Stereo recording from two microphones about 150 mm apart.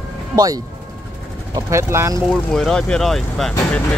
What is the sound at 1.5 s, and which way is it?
Speech, 20° right (ahead or behind).